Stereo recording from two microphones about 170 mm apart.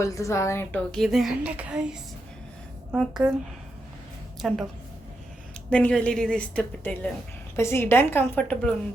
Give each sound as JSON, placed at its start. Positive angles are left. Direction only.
{"t": 0.0, "sound": "a woman's voice", "side_deg": 15}
{"t": 3.0, "sound": "a woman's voice", "side_deg": -5}
{"t": 4.4, "sound": "a woman's voice", "side_deg": 0}
{"t": 5.7, "sound": "a woman's voice", "side_deg": 10}